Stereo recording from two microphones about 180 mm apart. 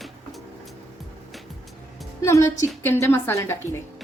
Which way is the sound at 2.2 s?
15° left (ahead or behind).